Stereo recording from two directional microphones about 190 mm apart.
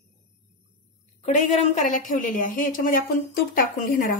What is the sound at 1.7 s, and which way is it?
A woman's voice, 45° left (ahead or behind).